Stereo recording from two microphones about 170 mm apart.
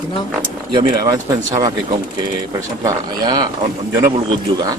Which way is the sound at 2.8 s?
25° right (ahead or behind).